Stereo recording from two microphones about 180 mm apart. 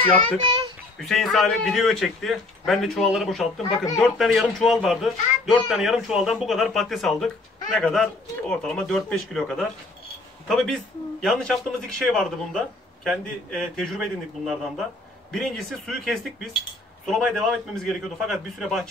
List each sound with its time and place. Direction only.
0.4 s a child's voice: 25° right (ahead or behind)
0.9 s a man's voice: centre (ahead or behind)